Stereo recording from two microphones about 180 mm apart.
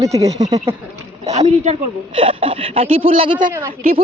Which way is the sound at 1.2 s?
40° right (ahead or behind).